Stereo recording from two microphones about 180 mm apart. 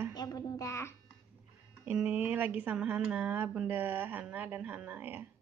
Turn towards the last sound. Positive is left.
turn(degrees=-10)  # may be behind; listen again after turning